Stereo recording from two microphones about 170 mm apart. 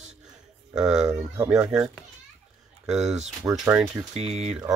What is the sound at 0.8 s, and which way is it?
Speech, 5° right (ahead or behind).